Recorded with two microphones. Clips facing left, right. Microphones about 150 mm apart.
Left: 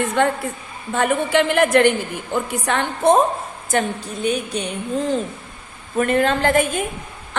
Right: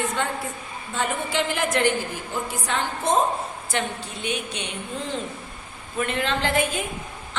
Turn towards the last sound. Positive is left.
turn(degrees=50)  # may be behind; listen again after turning